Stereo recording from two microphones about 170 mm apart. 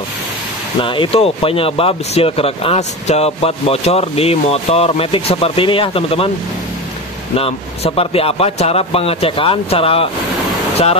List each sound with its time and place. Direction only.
0.7 s speech: 30° left (ahead or behind)
7.3 s speech: 35° left (ahead or behind)